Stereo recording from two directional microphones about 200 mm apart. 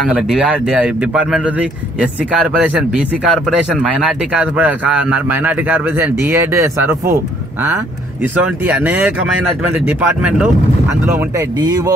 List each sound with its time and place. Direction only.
0.1 s speech: 5° right (ahead or behind)
8.2 s speech: 10° right (ahead or behind)